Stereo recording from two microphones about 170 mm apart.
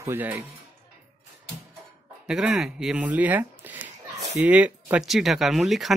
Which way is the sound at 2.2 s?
5° right (ahead or behind).